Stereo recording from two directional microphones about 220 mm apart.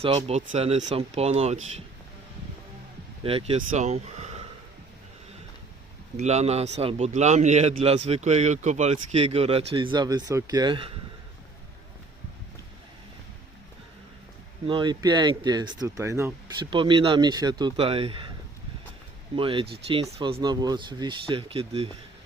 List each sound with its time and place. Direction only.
0.0 s a man's voice: 25° right (ahead or behind)
3.2 s a man's voice: 25° right (ahead or behind)
6.1 s a man's voice: 30° right (ahead or behind)
14.7 s a man's voice: 20° right (ahead or behind)
19.4 s a man's voice: 25° right (ahead or behind)